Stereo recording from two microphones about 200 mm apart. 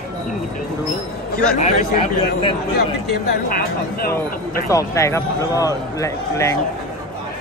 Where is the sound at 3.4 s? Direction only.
50° left (ahead or behind).